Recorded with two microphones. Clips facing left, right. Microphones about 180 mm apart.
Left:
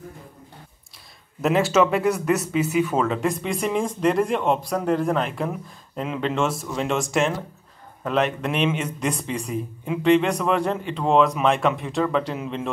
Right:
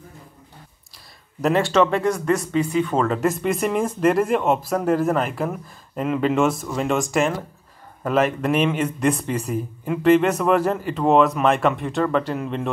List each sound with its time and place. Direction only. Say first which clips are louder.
1.4 s speech: right 1 dB; centre (ahead or behind)